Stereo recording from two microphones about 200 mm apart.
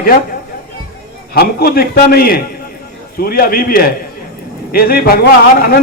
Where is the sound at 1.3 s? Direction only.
50° left (ahead or behind).